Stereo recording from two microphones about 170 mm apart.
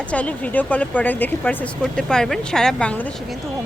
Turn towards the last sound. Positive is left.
turn(degrees=5)  # may be behind; listen again after turning